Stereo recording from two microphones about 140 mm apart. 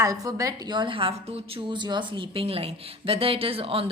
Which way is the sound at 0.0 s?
25° right (ahead or behind).